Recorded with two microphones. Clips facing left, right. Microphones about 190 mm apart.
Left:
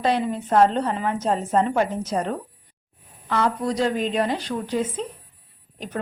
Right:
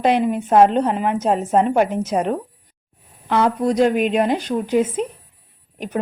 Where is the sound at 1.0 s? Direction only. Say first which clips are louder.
Right 4 dB; 65° right (ahead or behind).